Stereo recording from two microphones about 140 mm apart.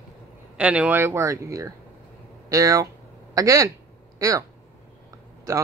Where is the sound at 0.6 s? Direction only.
10° right (ahead or behind).